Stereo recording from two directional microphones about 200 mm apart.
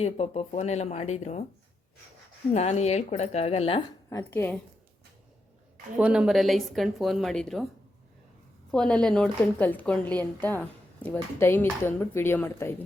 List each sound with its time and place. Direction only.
0.0 s speech: 30° left (ahead or behind)
2.5 s speech: 35° left (ahead or behind)
4.1 s a woman's voice: 10° left (ahead or behind)
6.0 s speech: 5° right (ahead or behind)
8.7 s a woman's voice: 5° left (ahead or behind)